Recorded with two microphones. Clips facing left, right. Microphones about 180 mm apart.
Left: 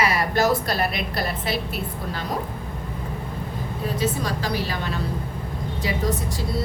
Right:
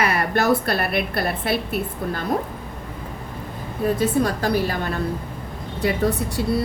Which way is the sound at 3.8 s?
55° right (ahead or behind).